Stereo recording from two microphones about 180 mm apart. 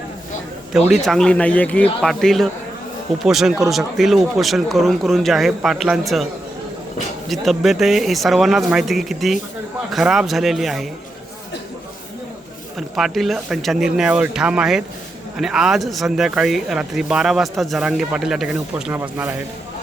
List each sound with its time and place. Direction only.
0.9 s speech: centre (ahead or behind)
7.3 s speech: centre (ahead or behind)
13.0 s speech: centre (ahead or behind)